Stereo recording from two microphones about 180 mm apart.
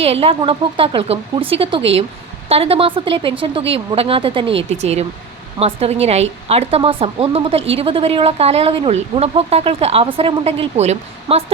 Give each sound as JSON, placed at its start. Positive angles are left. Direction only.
{"t": 0.0, "sound": "speech", "side_deg": -35}